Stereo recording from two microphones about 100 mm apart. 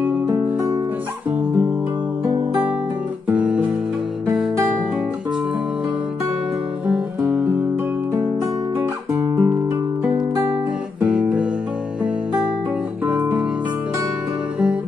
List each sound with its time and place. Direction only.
3.3 s music: 10° right (ahead or behind)
8.7 s guitar: 25° right (ahead or behind)
11.0 s music: 15° right (ahead or behind)
13.1 s music: 10° right (ahead or behind)